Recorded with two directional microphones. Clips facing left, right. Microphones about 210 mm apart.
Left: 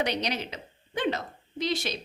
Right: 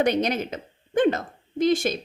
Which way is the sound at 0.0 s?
50° right (ahead or behind).